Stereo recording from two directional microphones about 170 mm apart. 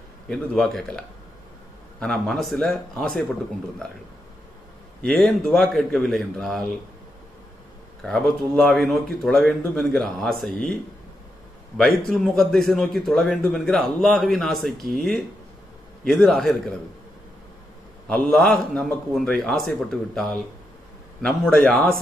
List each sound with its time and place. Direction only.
0.3 s a man's voice: centre (ahead or behind)
5.0 s a man's voice: centre (ahead or behind)
8.0 s a man's voice: 5° left (ahead or behind)
11.7 s a man's voice: centre (ahead or behind)
18.0 s a man's voice: 5° left (ahead or behind)